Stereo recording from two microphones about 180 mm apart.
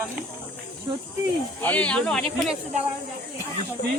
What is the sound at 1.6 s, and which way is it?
Speech, 10° left (ahead or behind).